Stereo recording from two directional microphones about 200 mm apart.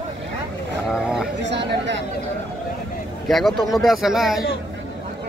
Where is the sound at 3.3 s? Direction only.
Centre (ahead or behind).